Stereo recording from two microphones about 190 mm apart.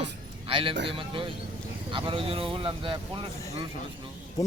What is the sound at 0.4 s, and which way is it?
A man's voice, 25° right (ahead or behind).